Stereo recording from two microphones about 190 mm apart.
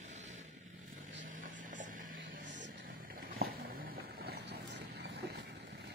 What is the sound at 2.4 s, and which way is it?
Vehicle, 70° right (ahead or behind).